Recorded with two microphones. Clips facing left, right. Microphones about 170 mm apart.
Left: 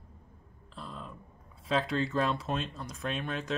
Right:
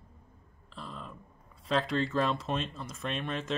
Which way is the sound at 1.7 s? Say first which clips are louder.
Even; centre (ahead or behind).